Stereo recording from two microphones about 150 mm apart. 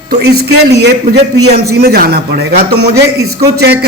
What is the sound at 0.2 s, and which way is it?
A man's voice, 90° right.